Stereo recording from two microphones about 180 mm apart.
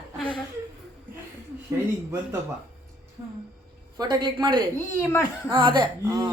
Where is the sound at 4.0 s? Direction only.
25° right (ahead or behind).